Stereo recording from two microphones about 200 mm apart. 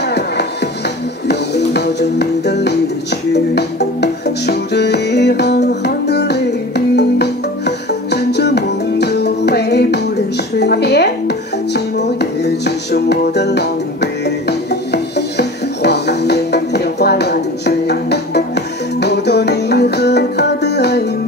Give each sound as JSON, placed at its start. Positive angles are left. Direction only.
{"t": 0.0, "sound": "music", "side_deg": 55}